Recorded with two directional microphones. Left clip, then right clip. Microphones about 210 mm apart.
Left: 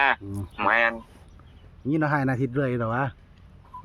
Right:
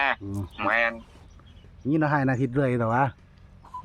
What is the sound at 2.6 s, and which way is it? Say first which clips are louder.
Speech: right 4 dB; 20° right (ahead or behind).